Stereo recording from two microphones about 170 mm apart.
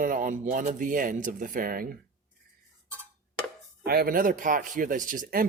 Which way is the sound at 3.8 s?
65° right (ahead or behind).